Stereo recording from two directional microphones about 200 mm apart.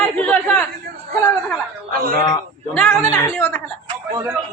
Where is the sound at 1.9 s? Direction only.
45° right (ahead or behind).